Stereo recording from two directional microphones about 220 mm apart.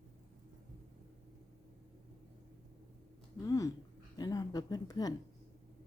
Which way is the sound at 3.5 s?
15° left (ahead or behind).